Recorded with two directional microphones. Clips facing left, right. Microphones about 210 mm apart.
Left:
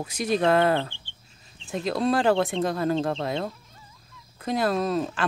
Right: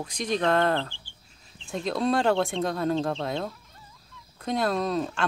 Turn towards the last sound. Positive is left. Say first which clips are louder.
# left 1 dB
turn(degrees=5)  # may be behind; listen again after turning